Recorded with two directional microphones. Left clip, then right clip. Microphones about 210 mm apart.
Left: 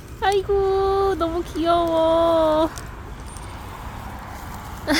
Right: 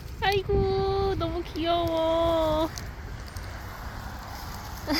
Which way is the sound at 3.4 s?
30° left (ahead or behind).